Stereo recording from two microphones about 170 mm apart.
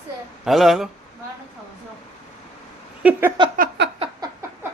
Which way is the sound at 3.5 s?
60° right (ahead or behind).